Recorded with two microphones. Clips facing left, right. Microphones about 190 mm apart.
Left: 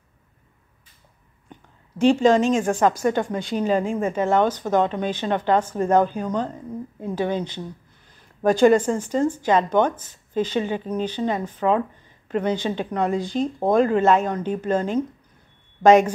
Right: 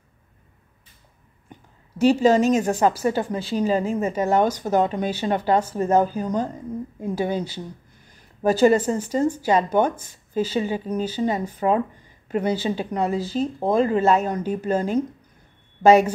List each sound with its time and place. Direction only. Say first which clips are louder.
2.0 s speech: even; 5° right (ahead or behind)